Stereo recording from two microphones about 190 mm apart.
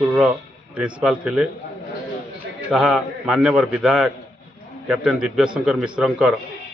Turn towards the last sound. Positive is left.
turn(degrees=-5)  # may be behind; listen again after turning